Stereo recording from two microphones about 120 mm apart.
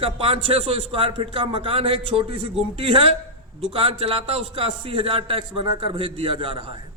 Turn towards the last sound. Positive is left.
turn(degrees=-50)  # may be behind; listen again after turning